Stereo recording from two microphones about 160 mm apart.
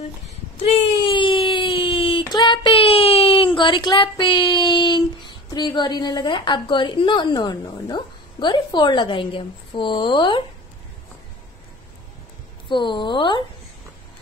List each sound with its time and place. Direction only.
1.0 s child singing: 35° left (ahead or behind)
12.6 s speech: 30° left (ahead or behind)